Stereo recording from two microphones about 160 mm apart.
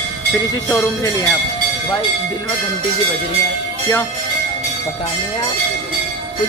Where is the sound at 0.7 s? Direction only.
15° left (ahead or behind).